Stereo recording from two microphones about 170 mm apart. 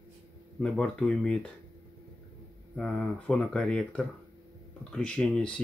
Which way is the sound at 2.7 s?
5° left (ahead or behind).